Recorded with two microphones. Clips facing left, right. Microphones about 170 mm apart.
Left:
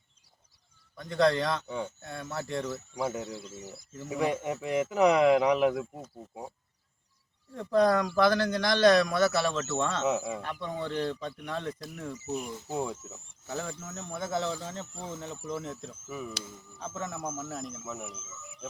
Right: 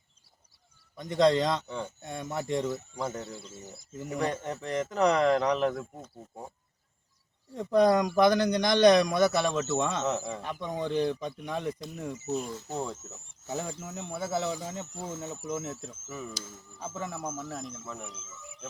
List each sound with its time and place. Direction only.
0.9 s speech: 20° right (ahead or behind)
1.6 s speech: 10° left (ahead or behind)
2.0 s speech: 15° right (ahead or behind)
2.9 s speech: 10° left (ahead or behind)
7.5 s speech: 20° right (ahead or behind)
10.2 s speech: 5° left (ahead or behind)
10.4 s speech: 15° right (ahead or behind)
12.5 s speech: 10° left (ahead or behind)
13.5 s a man's voice: 10° right (ahead or behind)
16.0 s speech: 10° left (ahead or behind)
16.5 s speech: 5° right (ahead or behind)
17.3 s speech: 5° left (ahead or behind)